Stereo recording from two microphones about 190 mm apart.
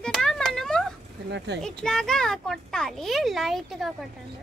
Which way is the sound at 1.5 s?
65° right (ahead or behind).